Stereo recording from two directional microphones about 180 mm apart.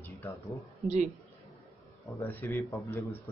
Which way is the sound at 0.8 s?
40° right (ahead or behind).